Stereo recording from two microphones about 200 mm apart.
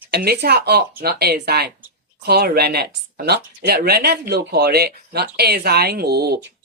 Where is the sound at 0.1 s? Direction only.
50° right (ahead or behind).